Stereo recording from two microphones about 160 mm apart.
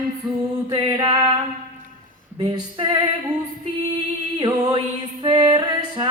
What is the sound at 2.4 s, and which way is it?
Female singing, 30° right (ahead or behind).